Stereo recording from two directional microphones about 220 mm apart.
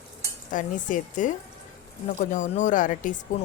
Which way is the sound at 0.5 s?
35° left (ahead or behind).